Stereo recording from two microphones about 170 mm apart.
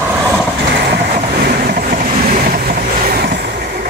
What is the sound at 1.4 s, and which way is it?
Vehicle, 60° right (ahead or behind).